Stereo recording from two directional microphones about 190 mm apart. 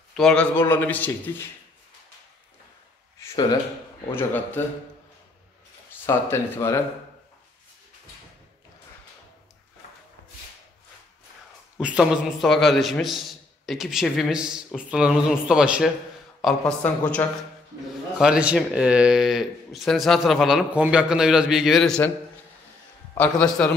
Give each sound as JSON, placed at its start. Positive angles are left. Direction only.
{"t": 0.1, "sound": "a man's voice", "side_deg": 5}
{"t": 3.2, "sound": "a sound", "side_deg": 20}
{"t": 4.1, "sound": "a man's voice", "side_deg": 10}
{"t": 6.0, "sound": "a man's voice", "side_deg": 15}
{"t": 11.8, "sound": "a man's voice", "side_deg": -5}
{"t": 18.2, "sound": "speech", "side_deg": -5}
{"t": 23.1, "sound": "a man's voice", "side_deg": 10}